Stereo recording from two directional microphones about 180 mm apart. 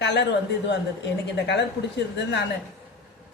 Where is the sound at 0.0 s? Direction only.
75° left (ahead or behind).